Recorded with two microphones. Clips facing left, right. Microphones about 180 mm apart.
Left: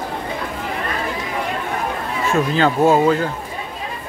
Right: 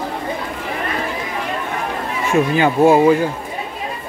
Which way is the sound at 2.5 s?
10° right (ahead or behind).